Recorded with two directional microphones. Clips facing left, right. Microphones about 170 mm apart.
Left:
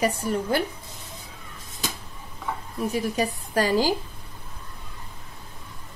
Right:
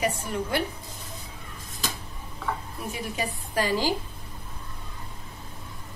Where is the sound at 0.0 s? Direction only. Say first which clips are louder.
Left 4 dB; 40° left (ahead or behind).